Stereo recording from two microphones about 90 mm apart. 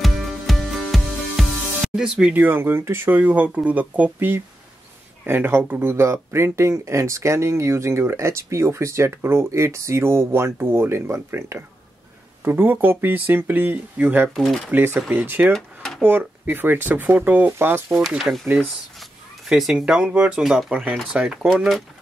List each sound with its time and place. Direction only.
0.0 s music: centre (ahead or behind)
2.3 s speech: 25° right (ahead or behind)
3.2 s speech: 15° right (ahead or behind)
14.3 s speech: centre (ahead or behind)
15.0 s speech: 20° right (ahead or behind)
15.5 s a sound: 5° left (ahead or behind)
16.0 s speech: 20° right (ahead or behind)
18.0 s speech: centre (ahead or behind)
19.5 s speech: 5° right (ahead or behind)
20.7 s speech: 15° right (ahead or behind)